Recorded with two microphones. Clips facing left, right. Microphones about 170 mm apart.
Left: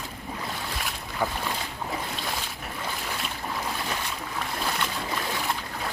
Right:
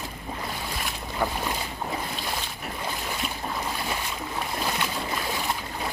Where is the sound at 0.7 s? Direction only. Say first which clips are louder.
Right 1 dB; 5° right (ahead or behind).